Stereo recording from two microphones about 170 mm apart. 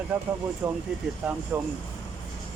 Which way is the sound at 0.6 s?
10° right (ahead or behind).